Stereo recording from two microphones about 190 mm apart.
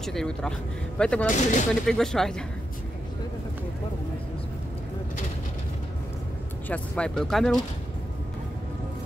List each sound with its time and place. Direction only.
0.0 s speech: centre (ahead or behind)
1.2 s speech: 40° left (ahead or behind)
1.9 s speech: centre (ahead or behind)
6.7 s speech: 5° left (ahead or behind)